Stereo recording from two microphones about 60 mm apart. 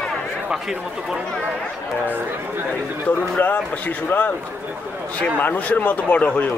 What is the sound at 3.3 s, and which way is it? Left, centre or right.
Speech, left.